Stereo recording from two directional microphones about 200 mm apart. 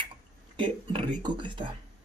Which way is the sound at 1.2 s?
25° right (ahead or behind).